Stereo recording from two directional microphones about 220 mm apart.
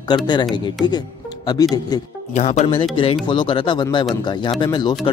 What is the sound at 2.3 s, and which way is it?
Speech, 30° left (ahead or behind).